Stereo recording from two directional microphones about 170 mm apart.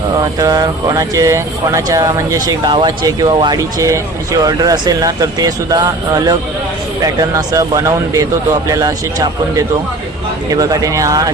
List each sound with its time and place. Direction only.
0.2 s speech: 20° right (ahead or behind)